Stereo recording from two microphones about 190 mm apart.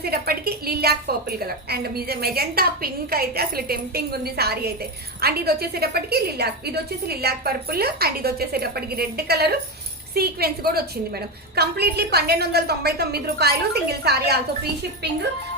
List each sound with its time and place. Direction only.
0.0 s a woman's voice: 55° right (ahead or behind)